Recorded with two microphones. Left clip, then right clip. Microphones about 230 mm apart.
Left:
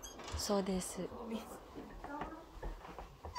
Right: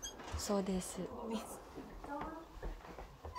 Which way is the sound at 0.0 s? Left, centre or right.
Centre.